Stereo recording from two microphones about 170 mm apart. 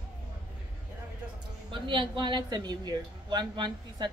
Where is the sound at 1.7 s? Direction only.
30° right (ahead or behind).